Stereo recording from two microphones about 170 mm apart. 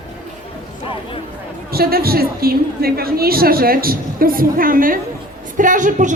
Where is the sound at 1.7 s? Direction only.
65° right (ahead or behind).